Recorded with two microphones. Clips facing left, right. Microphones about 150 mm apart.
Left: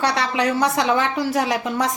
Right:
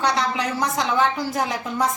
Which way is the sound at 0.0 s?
70° left (ahead or behind).